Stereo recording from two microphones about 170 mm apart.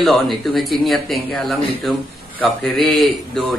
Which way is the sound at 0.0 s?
Centre (ahead or behind).